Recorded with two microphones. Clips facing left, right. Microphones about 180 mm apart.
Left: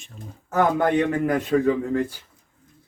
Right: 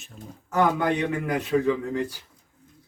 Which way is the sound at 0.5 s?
55° left (ahead or behind).